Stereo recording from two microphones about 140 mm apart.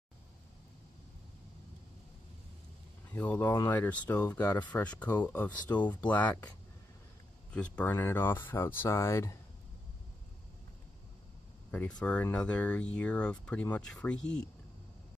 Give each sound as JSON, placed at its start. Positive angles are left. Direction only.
{"t": 3.2, "sound": "speech", "side_deg": 10}
{"t": 7.5, "sound": "speech", "side_deg": 10}
{"t": 11.7, "sound": "speech", "side_deg": 10}